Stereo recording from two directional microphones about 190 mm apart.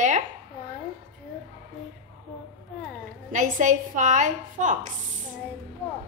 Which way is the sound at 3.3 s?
40° right (ahead or behind).